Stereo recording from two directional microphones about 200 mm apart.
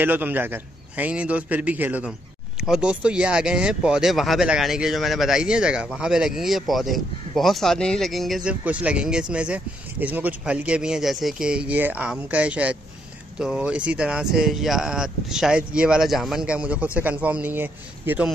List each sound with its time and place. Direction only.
0.0 s a man's voice: 10° right (ahead or behind)